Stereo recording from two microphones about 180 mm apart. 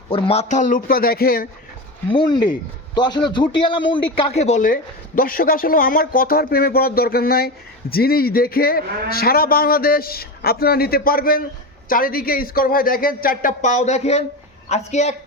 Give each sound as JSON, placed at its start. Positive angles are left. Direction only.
{"t": 0.1, "sound": "speech", "side_deg": 30}
{"t": 2.0, "sound": "a man's voice", "side_deg": 25}